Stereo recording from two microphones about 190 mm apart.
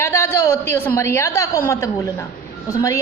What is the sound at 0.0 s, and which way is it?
A woman's voice, 15° left (ahead or behind).